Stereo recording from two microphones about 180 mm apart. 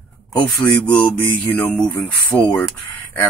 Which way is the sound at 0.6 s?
10° left (ahead or behind).